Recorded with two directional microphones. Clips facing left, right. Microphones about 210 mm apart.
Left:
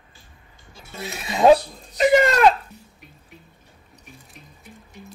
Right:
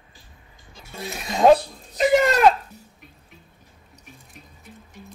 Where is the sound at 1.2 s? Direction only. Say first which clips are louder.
Left 1 dB; 5° left (ahead or behind).